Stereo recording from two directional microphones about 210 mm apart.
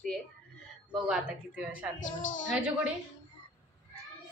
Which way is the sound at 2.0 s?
40° left (ahead or behind).